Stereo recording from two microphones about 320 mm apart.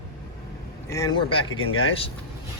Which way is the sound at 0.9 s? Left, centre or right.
Centre.